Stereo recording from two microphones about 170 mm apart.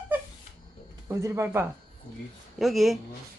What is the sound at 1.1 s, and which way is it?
Speech, 15° right (ahead or behind).